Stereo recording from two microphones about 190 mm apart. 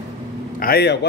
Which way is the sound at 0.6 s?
60° left (ahead or behind).